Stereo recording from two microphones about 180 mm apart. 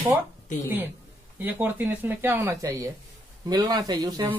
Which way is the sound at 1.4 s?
10° right (ahead or behind).